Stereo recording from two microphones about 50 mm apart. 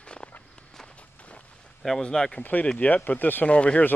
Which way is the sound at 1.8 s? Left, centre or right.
Centre.